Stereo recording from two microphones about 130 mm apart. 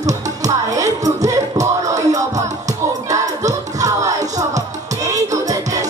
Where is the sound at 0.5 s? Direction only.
25° right (ahead or behind).